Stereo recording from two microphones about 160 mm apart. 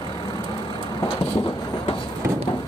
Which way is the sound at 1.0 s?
30° left (ahead or behind).